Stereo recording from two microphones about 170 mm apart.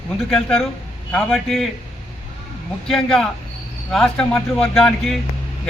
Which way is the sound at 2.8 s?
5° left (ahead or behind).